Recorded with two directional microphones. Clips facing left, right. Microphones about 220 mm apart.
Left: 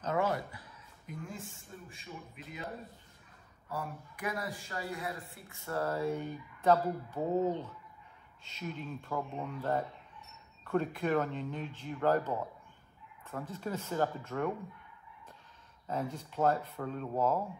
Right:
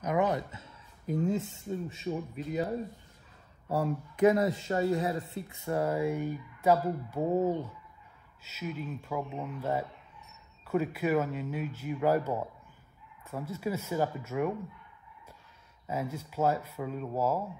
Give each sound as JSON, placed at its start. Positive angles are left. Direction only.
{"t": 0.0, "sound": "a sound", "side_deg": -15}
{"t": 1.0, "sound": "speech", "side_deg": -25}
{"t": 2.3, "sound": "speech", "side_deg": -35}
{"t": 4.2, "sound": "speech", "side_deg": -25}
{"t": 15.9, "sound": "speech", "side_deg": -5}